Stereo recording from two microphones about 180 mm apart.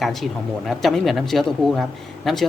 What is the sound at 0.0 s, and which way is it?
Speech, centre (ahead or behind).